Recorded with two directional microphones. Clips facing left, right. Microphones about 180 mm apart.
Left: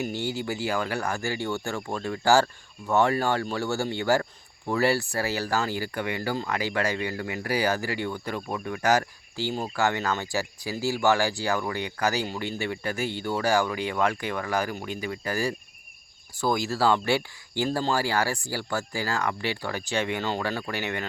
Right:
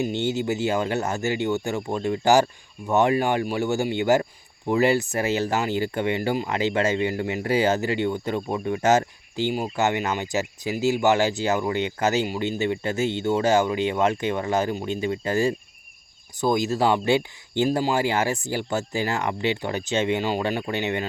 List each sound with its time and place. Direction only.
0.0 s speech: 20° right (ahead or behind)